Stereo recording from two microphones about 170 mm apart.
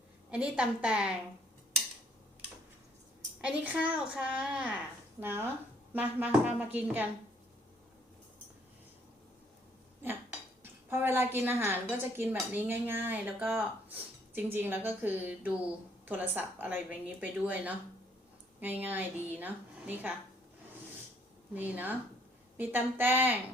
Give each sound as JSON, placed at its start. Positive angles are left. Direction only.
{"t": 0.3, "sound": "a woman's voice", "side_deg": -5}
{"t": 3.4, "sound": "speech", "side_deg": -10}
{"t": 10.6, "sound": "speech", "side_deg": -15}
{"t": 21.5, "sound": "speech", "side_deg": -10}